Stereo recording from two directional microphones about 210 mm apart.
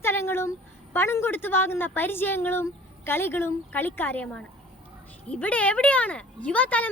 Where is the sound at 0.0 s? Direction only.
10° left (ahead or behind).